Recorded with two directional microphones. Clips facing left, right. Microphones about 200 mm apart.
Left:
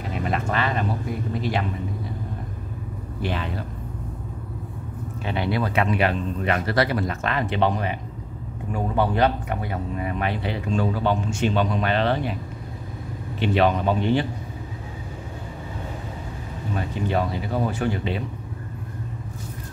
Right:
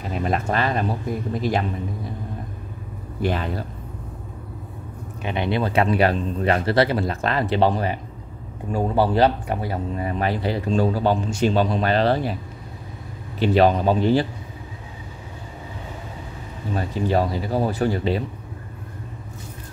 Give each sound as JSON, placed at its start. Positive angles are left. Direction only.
{"t": 0.2, "sound": "speech", "side_deg": -40}
{"t": 3.2, "sound": "speech", "side_deg": -45}
{"t": 5.2, "sound": "speech", "side_deg": -20}
{"t": 13.4, "sound": "speech", "side_deg": -35}
{"t": 16.7, "sound": "speech", "side_deg": -35}